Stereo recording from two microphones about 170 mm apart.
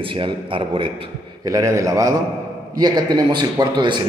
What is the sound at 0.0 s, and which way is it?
Speech, 30° right (ahead or behind).